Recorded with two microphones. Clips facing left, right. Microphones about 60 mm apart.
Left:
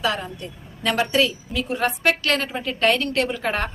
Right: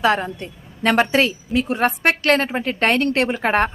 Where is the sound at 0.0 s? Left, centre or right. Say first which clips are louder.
Right 6 dB; right.